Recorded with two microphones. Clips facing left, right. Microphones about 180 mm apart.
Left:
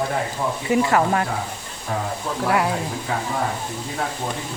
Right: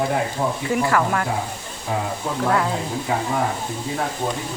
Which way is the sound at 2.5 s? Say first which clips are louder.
Left 1 dB; 10° left (ahead or behind).